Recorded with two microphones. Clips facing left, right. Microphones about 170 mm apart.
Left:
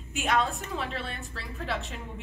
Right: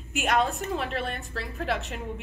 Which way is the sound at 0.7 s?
55° right (ahead or behind).